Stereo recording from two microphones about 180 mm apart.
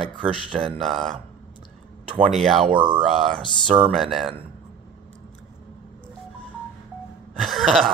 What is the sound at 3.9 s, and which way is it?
Speech, centre (ahead or behind).